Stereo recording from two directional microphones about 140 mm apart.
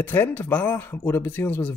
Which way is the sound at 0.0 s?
15° left (ahead or behind).